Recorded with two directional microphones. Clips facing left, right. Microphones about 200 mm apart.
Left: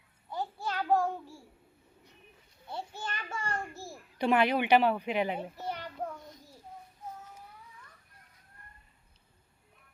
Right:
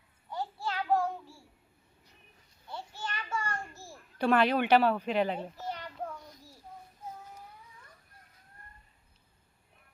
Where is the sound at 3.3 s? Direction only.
35° left (ahead or behind).